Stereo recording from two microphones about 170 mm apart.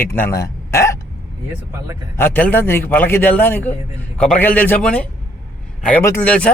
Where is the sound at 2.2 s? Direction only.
10° left (ahead or behind).